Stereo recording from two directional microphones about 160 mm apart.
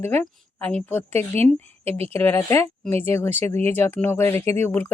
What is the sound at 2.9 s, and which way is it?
Speech, 40° right (ahead or behind).